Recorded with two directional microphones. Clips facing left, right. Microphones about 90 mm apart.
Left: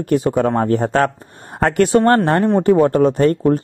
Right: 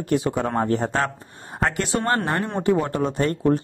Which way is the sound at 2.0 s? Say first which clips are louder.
Left 7 dB; 35° left (ahead or behind).